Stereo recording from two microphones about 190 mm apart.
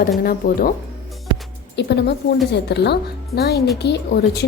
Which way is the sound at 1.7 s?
60° left (ahead or behind).